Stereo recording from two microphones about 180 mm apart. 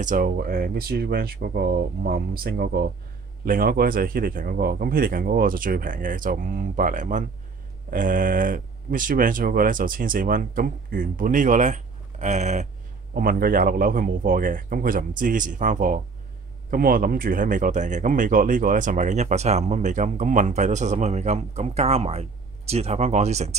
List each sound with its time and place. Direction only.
0.0 s speech: 50° right (ahead or behind)
3.4 s speech: 55° right (ahead or behind)
13.1 s speech: 55° right (ahead or behind); by 23.5 s 40° right (ahead or behind)